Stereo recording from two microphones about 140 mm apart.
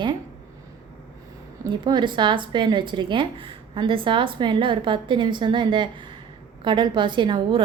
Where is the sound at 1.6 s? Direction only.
30° right (ahead or behind).